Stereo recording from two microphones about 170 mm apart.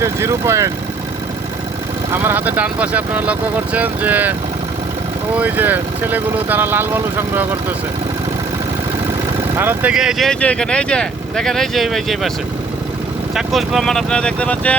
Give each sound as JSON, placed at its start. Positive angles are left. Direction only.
{"t": 0.0, "sound": "speech", "side_deg": -15}
{"t": 2.2, "sound": "speech", "side_deg": -10}
{"t": 9.6, "sound": "speech", "side_deg": -10}
{"t": 13.3, "sound": "speech", "side_deg": 0}